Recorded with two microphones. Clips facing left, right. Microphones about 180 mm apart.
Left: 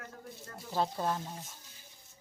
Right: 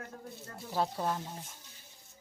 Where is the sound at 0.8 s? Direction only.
5° right (ahead or behind).